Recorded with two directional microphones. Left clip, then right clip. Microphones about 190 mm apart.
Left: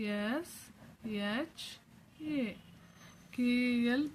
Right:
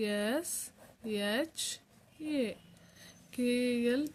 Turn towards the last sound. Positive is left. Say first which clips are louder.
# right 1 dB
turn(degrees=-25)  # may be behind; listen again after turning